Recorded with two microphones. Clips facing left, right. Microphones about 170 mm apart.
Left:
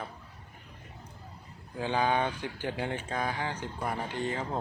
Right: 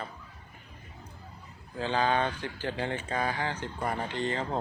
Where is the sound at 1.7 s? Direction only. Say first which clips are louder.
Right 1 dB; 10° left (ahead or behind).